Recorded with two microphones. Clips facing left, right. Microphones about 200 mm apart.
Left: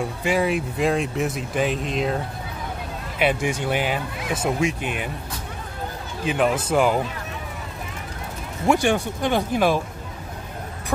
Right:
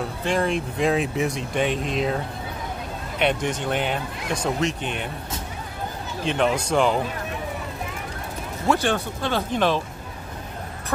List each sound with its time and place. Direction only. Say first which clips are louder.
0.2 s speech: left 1 dB; 5° left (ahead or behind)
6.2 s speech: left 1 dB; 5° left (ahead or behind)
8.6 s speech: left 3 dB; 15° left (ahead or behind)